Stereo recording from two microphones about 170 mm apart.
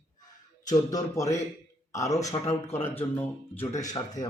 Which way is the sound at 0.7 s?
20° left (ahead or behind).